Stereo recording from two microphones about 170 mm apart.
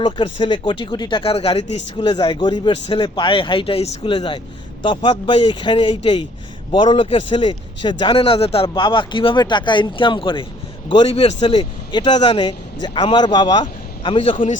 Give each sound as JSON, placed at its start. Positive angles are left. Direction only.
{"t": 0.0, "sound": "a man's voice", "side_deg": 30}
{"t": 2.0, "sound": "a man's voice", "side_deg": 25}